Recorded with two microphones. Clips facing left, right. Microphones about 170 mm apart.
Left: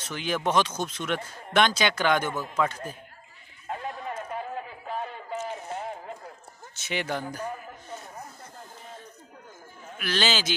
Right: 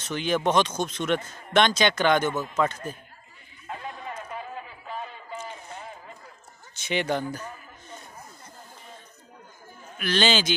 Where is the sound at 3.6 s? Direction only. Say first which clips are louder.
Left 2 dB; 45° left (ahead or behind).